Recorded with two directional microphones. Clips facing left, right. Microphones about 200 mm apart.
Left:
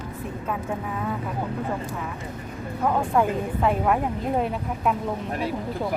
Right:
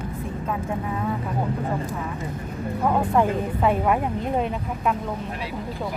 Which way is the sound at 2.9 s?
Centre (ahead or behind).